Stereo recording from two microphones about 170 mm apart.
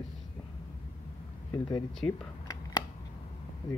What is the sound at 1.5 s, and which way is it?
Speech, 25° left (ahead or behind).